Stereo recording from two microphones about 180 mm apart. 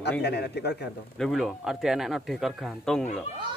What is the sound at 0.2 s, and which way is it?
Speech, 65° left (ahead or behind).